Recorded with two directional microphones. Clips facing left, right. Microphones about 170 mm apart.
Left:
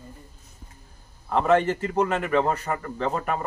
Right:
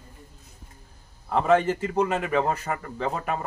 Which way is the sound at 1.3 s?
15° right (ahead or behind).